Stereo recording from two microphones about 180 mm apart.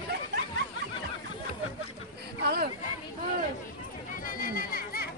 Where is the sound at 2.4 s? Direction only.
60° right (ahead or behind).